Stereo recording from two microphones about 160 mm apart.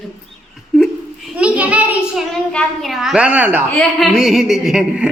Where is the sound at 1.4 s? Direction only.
5° right (ahead or behind).